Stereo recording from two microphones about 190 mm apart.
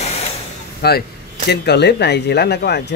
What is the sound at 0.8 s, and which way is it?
Speech, 55° left (ahead or behind).